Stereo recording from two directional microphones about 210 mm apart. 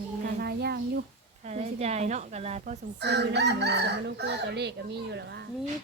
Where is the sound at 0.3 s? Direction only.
50° right (ahead or behind).